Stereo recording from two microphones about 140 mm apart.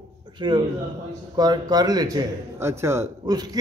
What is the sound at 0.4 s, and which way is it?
A man's voice, 30° right (ahead or behind).